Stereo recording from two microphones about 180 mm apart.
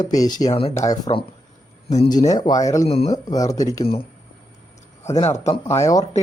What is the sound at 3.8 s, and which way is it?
Speech, 30° left (ahead or behind).